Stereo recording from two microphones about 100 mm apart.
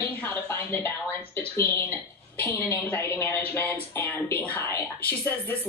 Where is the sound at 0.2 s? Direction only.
20° left (ahead or behind).